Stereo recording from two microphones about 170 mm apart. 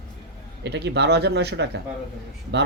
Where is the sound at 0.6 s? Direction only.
90° right.